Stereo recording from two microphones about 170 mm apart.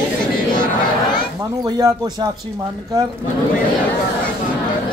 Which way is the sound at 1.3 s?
20° right (ahead or behind).